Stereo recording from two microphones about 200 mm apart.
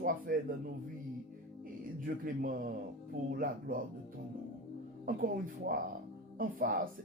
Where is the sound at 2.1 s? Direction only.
45° right (ahead or behind).